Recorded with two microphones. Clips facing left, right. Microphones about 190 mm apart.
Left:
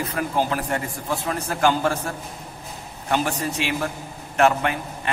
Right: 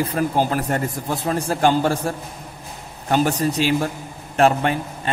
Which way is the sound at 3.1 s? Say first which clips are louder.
Right 5 dB; 35° right (ahead or behind).